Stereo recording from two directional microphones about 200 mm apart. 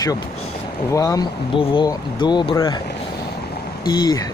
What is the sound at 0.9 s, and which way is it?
Speech, 15° left (ahead or behind).